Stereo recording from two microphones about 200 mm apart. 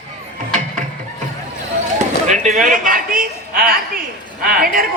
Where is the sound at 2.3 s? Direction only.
40° right (ahead or behind).